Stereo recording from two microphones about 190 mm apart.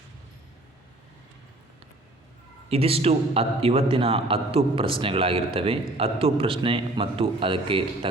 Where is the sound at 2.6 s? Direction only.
30° right (ahead or behind).